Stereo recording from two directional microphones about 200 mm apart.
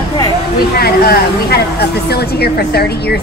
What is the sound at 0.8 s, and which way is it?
Speech, 50° left (ahead or behind).